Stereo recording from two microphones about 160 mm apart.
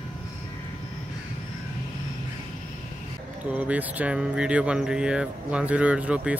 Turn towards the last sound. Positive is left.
turn(degrees=-5)  # may be behind; listen again after turning